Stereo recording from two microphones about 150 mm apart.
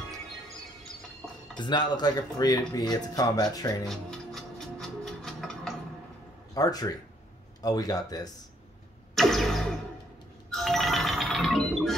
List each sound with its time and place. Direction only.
1.6 s speech: 30° left (ahead or behind)
3.8 s music: centre (ahead or behind)
6.5 s speech: 25° left (ahead or behind)
9.1 s a sound: centre (ahead or behind)
10.5 s music: centre (ahead or behind)